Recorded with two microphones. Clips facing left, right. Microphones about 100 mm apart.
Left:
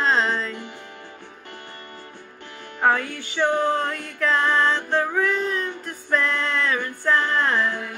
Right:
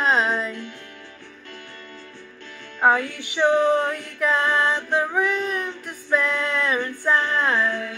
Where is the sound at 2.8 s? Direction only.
15° right (ahead or behind).